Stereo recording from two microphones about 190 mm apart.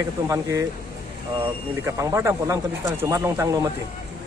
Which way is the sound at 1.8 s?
15° right (ahead or behind).